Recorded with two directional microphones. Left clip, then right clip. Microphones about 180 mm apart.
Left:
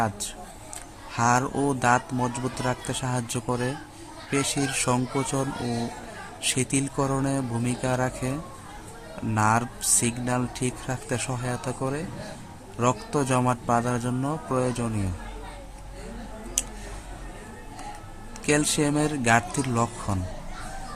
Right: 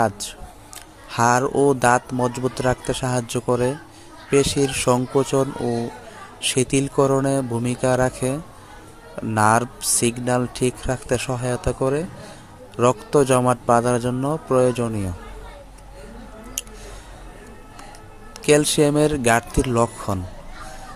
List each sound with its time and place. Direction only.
0.0 s a man's voice: 30° right (ahead or behind)
16.6 s a sound: 25° right (ahead or behind)
18.4 s a man's voice: 30° right (ahead or behind)